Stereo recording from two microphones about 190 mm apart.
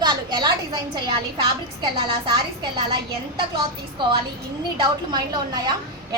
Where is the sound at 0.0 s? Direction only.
25° right (ahead or behind).